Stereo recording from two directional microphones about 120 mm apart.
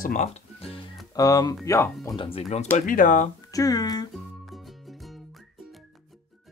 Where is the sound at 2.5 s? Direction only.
75° left (ahead or behind).